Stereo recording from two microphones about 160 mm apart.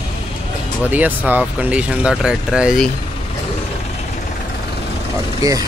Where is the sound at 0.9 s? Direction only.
10° right (ahead or behind).